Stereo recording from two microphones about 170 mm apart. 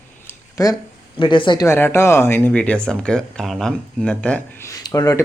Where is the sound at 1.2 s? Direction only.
30° left (ahead or behind).